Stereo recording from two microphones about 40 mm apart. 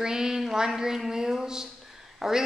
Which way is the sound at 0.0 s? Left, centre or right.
Centre.